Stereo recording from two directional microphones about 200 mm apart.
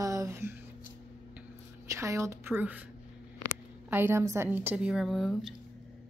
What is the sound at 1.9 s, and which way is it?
Speech, 15° right (ahead or behind).